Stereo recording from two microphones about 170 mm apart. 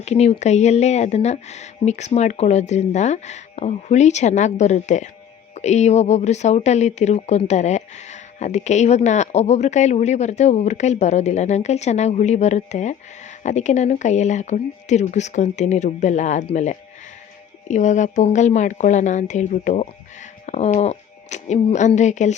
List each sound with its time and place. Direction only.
0.0 s speech: 40° left (ahead or behind)